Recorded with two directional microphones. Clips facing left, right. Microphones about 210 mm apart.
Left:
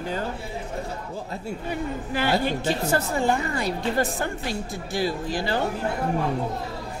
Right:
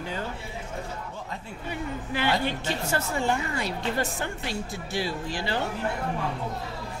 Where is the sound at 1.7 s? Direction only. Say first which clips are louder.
Left 2 dB; 40° left (ahead or behind).